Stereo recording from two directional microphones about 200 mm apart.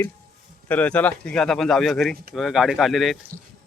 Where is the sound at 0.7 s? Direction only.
5° left (ahead or behind).